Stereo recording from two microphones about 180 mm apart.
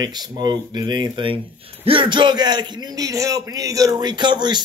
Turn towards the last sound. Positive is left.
turn(degrees=-25)  # may be behind; listen again after turning